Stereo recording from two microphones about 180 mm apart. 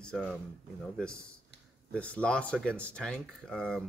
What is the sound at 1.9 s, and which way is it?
Speech, 5° left (ahead or behind).